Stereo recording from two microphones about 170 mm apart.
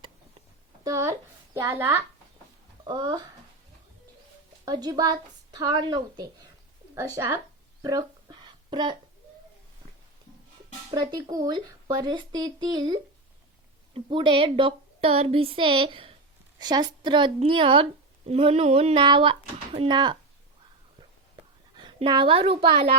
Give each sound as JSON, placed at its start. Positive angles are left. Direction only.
{"t": 0.9, "sound": "a woman's voice", "side_deg": -20}
{"t": 4.6, "sound": "speech", "side_deg": -25}
{"t": 6.9, "sound": "a sound", "side_deg": -20}
{"t": 10.9, "sound": "a woman's voice", "side_deg": -25}
{"t": 21.8, "sound": "a woman's voice", "side_deg": -30}